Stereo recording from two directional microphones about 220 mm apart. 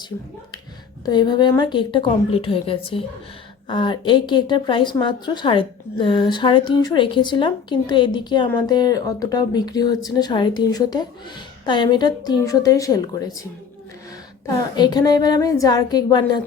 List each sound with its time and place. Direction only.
0.1 s a woman's voice: 20° left (ahead or behind)
14.4 s a woman's voice: 15° left (ahead or behind)